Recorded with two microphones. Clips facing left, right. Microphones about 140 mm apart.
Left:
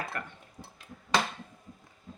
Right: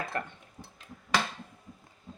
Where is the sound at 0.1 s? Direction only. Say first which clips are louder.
Right 4 dB; 25° right (ahead or behind).